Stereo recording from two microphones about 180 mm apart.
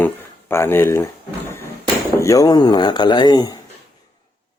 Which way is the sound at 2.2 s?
20° left (ahead or behind).